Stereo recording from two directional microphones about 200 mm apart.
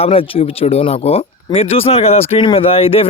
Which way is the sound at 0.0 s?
30° left (ahead or behind).